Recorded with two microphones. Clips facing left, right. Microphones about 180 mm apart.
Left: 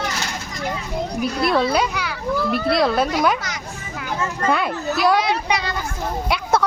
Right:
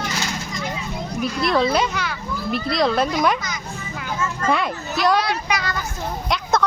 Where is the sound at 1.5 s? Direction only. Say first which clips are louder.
Right 1 dB; centre (ahead or behind).